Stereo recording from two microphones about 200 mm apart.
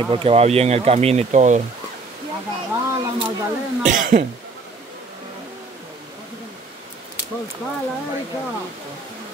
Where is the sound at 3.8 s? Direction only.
40° right (ahead or behind).